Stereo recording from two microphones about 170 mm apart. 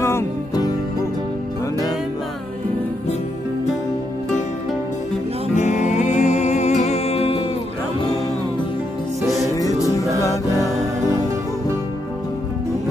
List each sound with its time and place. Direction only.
0.0 s music: 20° left (ahead or behind)
5.6 s music: 45° left (ahead or behind)
9.6 s music: 20° left (ahead or behind)
11.1 s music: 20° right (ahead or behind)